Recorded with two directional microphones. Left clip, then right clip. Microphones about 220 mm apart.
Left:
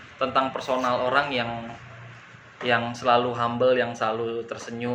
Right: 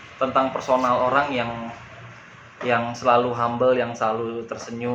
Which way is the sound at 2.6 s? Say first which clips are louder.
Right 2 dB; 20° left (ahead or behind).